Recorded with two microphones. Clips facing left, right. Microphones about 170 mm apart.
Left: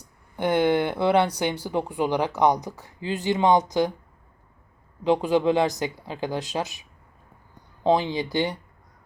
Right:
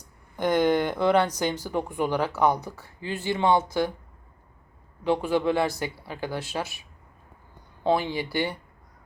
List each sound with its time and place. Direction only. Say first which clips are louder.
0.3 s speech: left 1 dB; 10° left (ahead or behind)
5.0 s speech: left 3 dB; 15° left (ahead or behind)
7.9 s speech: left 3 dB; 15° left (ahead or behind)